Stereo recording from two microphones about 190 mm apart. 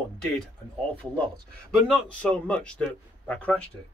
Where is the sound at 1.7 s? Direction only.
5° left (ahead or behind).